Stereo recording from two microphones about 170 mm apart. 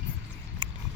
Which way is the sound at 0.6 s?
25° right (ahead or behind).